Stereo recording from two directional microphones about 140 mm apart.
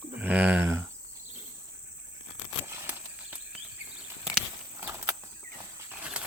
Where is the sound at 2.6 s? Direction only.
15° right (ahead or behind).